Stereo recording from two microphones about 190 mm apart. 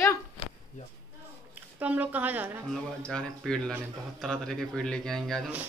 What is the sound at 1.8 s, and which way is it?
Speech, 10° right (ahead or behind).